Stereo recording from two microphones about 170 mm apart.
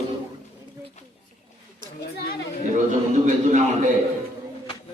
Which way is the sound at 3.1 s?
45° right (ahead or behind).